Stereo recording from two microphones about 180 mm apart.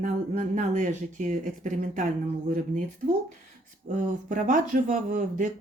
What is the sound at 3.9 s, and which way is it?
Speech, 45° right (ahead or behind).